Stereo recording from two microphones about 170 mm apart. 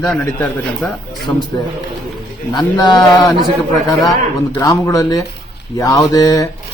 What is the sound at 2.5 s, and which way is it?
Speech, 25° left (ahead or behind).